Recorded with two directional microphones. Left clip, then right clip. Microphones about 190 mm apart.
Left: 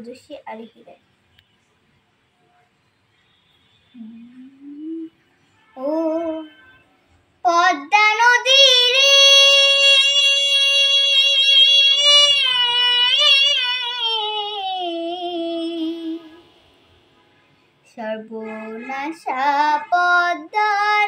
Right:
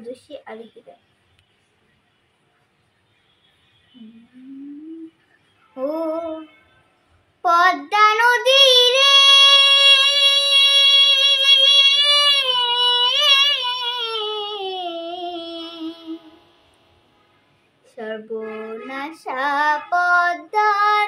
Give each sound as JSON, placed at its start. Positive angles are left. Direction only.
{"t": 0.1, "sound": "speech", "side_deg": -10}
{"t": 7.4, "sound": "child singing", "side_deg": -15}
{"t": 17.8, "sound": "a sound", "side_deg": -10}
{"t": 18.9, "sound": "child singing", "side_deg": -10}